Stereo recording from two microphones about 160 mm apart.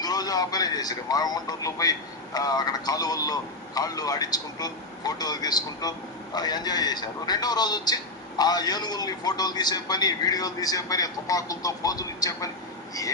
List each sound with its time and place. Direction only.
0.0 s speech: 25° left (ahead or behind)